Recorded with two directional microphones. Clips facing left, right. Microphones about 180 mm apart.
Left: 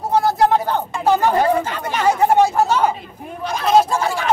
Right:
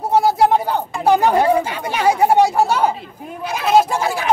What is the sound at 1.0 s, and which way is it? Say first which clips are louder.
Speech: right 2 dB; 15° right (ahead or behind).